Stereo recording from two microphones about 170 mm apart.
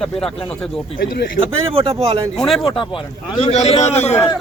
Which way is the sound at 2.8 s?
30° left (ahead or behind).